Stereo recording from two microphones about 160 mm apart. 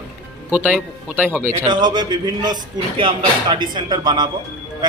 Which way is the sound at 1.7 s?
25° right (ahead or behind).